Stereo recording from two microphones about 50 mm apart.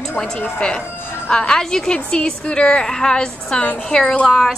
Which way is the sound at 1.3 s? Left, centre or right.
Centre.